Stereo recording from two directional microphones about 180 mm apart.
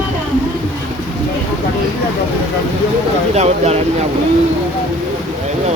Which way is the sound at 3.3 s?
35° right (ahead or behind).